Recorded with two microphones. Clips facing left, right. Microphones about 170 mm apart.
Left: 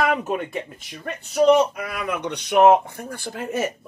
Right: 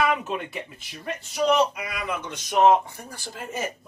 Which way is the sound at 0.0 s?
45° left (ahead or behind).